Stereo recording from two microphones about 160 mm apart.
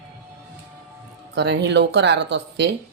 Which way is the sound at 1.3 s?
90° right.